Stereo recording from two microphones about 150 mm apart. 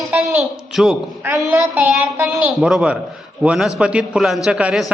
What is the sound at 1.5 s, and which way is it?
Speech, 10° right (ahead or behind).